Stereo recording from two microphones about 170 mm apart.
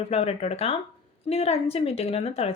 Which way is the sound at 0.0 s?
35° left (ahead or behind).